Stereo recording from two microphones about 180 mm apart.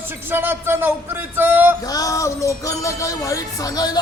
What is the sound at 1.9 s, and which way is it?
Speech, 20° left (ahead or behind).